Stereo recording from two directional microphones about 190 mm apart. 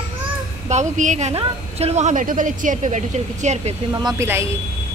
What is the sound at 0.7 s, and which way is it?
A woman's voice, 40° right (ahead or behind).